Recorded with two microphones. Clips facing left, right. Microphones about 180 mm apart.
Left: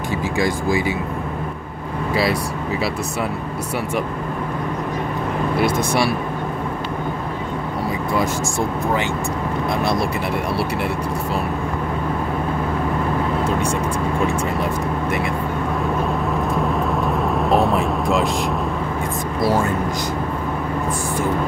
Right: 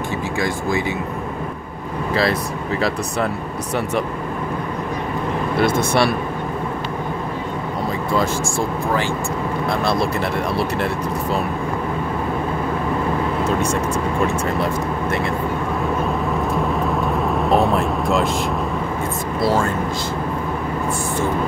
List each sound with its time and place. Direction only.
0.4 s speech: 10° left (ahead or behind)
5.6 s speech: 10° left (ahead or behind)
8.2 s speech: 20° left (ahead or behind)
16.5 s vehicle: centre (ahead or behind)